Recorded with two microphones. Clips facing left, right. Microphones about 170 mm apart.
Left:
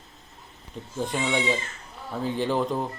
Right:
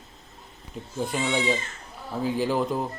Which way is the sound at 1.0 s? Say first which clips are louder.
Even; 5° right (ahead or behind).